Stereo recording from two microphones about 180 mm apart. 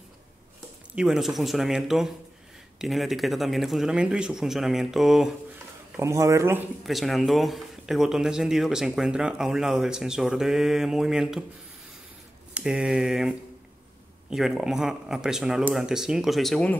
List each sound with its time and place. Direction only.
0.9 s speech: centre (ahead or behind)
5.9 s speech: 15° right (ahead or behind)
6.8 s speech: centre (ahead or behind)
12.5 s speech: 5° right (ahead or behind)